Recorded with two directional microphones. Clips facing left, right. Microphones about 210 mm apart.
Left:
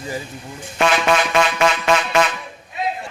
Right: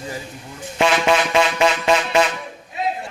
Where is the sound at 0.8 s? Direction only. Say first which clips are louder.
Even; 25° right (ahead or behind).